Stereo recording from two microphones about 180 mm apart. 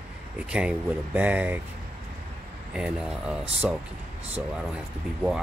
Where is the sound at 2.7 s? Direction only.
5° right (ahead or behind).